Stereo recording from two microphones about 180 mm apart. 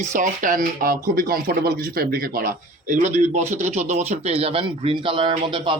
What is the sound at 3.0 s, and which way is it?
A man's voice, 40° right (ahead or behind).